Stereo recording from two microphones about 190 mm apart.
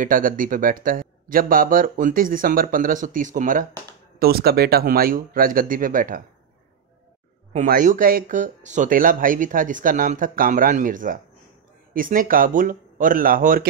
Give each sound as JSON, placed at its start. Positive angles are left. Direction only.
{"t": 0.0, "sound": "speech", "side_deg": -45}
{"t": 4.2, "sound": "speech", "side_deg": -55}
{"t": 7.5, "sound": "speech", "side_deg": -45}